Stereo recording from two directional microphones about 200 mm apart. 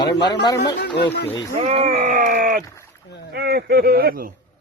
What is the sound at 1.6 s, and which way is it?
A man's voice, 30° right (ahead or behind).